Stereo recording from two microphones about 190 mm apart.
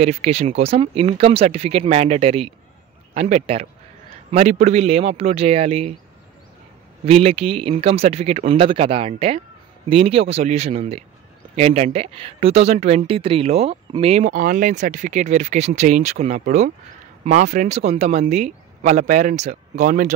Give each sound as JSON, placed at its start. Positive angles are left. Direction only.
{"t": 0.0, "sound": "speech", "side_deg": -35}
{"t": 7.1, "sound": "speech", "side_deg": -30}